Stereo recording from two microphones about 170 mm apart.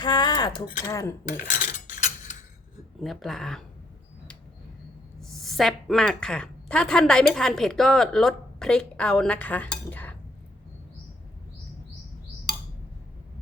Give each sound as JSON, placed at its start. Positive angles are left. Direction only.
{"t": 0.0, "sound": "a sound", "side_deg": 25}
{"t": 0.9, "sound": "cutlery", "side_deg": 20}
{"t": 1.3, "sound": "cutlery", "side_deg": 45}
{"t": 3.0, "sound": "speech", "side_deg": 0}
{"t": 5.2, "sound": "a woman's voice", "side_deg": 0}